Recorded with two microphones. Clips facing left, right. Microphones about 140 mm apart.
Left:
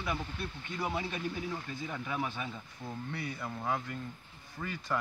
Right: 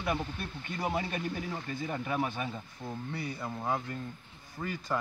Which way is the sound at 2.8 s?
25° right (ahead or behind).